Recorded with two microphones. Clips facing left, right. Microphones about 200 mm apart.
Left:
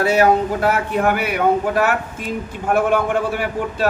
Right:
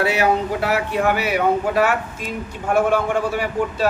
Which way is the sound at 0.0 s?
45° left (ahead or behind).